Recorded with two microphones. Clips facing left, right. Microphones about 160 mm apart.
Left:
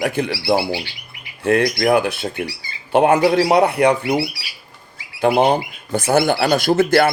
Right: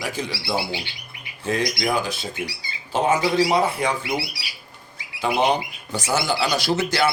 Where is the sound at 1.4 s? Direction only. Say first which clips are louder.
Left 8 dB; 60° left (ahead or behind).